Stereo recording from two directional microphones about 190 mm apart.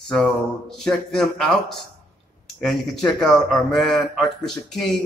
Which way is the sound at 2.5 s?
5° left (ahead or behind).